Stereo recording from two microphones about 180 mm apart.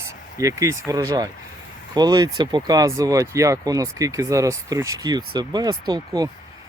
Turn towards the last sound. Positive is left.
turn(degrees=-20)  # may be behind; listen again after turning